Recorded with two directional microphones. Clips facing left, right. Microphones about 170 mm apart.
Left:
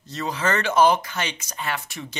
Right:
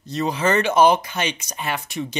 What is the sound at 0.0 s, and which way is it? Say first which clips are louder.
Speech: right 4 dB; 15° right (ahead or behind).